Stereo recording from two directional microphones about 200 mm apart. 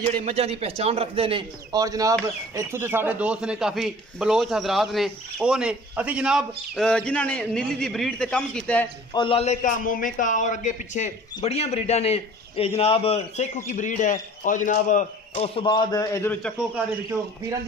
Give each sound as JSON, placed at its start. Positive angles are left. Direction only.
{"t": 0.2, "sound": "a man's voice", "side_deg": -30}
{"t": 9.1, "sound": "a man's voice", "side_deg": 25}